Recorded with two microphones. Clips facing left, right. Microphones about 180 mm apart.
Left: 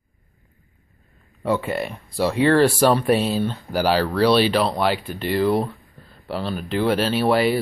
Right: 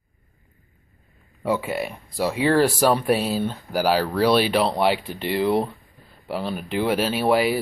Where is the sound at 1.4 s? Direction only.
5° right (ahead or behind).